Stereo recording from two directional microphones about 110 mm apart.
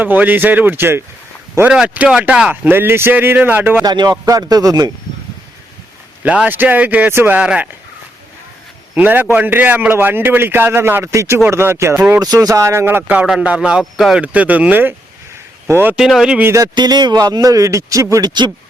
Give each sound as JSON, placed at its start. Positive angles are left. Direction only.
{"t": 0.0, "sound": "speech", "side_deg": -15}
{"t": 1.7, "sound": "speech", "side_deg": -10}
{"t": 3.8, "sound": "a man's voice", "side_deg": -40}
{"t": 6.2, "sound": "speech", "side_deg": -10}
{"t": 9.0, "sound": "speech", "side_deg": -15}
{"t": 12.2, "sound": "speech", "side_deg": -35}
{"t": 16.0, "sound": "speech", "side_deg": -5}
{"t": 16.4, "sound": "speech", "side_deg": -25}
{"t": 16.7, "sound": "a man's voice", "side_deg": -40}
{"t": 18.3, "sound": "speech", "side_deg": -40}